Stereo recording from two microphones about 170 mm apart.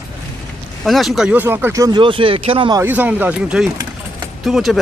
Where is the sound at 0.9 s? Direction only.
Centre (ahead or behind); by 2.8 s 30° right (ahead or behind).